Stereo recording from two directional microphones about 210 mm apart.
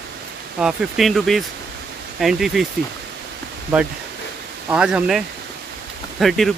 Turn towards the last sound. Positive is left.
turn(degrees=0)  # may be behind; listen again after turning